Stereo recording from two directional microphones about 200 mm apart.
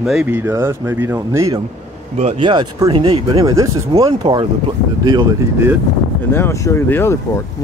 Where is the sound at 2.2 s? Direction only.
30° right (ahead or behind).